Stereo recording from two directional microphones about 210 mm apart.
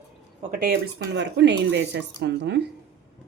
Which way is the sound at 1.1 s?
55° right (ahead or behind).